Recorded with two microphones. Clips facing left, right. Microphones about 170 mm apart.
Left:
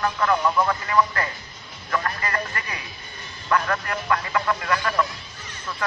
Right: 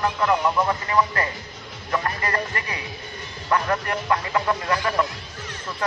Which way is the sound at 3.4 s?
25° right (ahead or behind).